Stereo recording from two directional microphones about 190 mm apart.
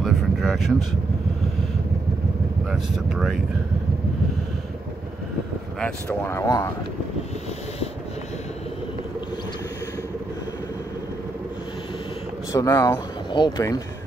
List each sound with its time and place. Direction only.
0.0 s a sound: centre (ahead or behind)
2.7 s speech: centre (ahead or behind)
6.0 s speech: 15° left (ahead or behind)
12.5 s speech: 15° left (ahead or behind)